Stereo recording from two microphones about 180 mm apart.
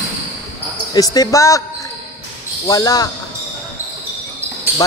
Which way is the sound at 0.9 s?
20° left (ahead or behind).